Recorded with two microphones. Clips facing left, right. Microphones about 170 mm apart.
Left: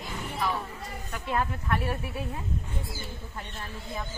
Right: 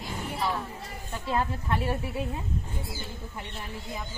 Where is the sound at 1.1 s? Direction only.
25° right (ahead or behind).